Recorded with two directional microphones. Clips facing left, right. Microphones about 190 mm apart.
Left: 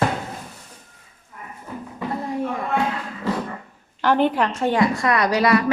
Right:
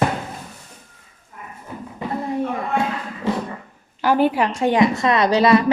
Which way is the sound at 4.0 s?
10° right (ahead or behind).